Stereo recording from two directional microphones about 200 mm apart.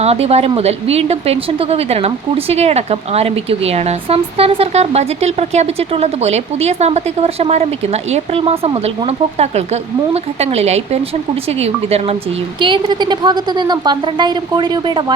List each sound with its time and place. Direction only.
0.0 s a woman's voice: 30° right (ahead or behind)